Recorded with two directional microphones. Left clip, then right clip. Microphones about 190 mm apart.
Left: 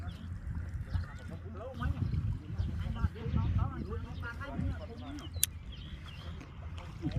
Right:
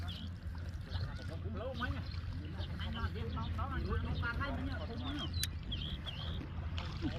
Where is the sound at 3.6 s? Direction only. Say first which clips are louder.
Right 1 dB; centre (ahead or behind).